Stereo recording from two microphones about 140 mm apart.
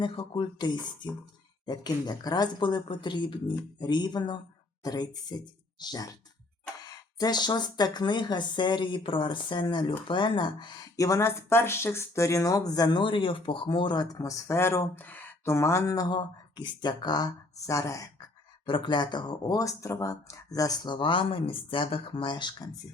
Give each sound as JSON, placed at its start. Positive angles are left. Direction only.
{"t": 0.0, "sound": "speech", "side_deg": 35}
{"t": 18.6, "sound": "speech", "side_deg": 35}